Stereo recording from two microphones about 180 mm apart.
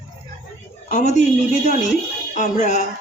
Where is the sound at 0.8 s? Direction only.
40° left (ahead or behind).